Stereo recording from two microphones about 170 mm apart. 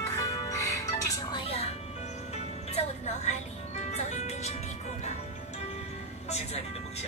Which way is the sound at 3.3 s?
40° left (ahead or behind).